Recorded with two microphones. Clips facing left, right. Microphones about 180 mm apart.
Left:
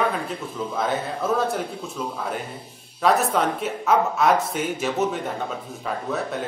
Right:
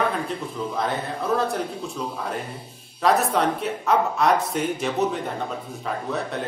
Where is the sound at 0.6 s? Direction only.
5° left (ahead or behind).